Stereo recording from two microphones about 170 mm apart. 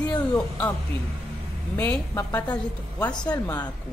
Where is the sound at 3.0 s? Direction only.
25° left (ahead or behind).